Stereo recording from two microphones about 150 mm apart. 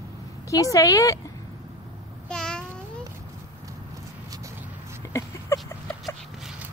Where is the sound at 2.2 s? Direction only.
5° left (ahead or behind).